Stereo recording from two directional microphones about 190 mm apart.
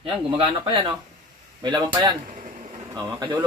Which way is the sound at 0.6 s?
25° right (ahead or behind).